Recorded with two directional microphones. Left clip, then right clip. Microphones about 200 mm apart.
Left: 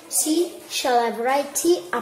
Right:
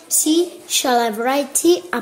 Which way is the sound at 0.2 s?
55° right (ahead or behind).